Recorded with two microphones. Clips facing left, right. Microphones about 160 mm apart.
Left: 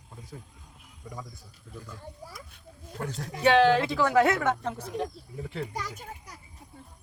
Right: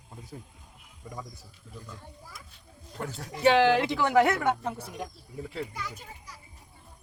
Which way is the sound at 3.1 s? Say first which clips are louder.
Even; 15° right (ahead or behind).